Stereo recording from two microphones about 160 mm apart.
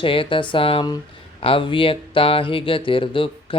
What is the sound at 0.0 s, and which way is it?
Speech, 35° left (ahead or behind).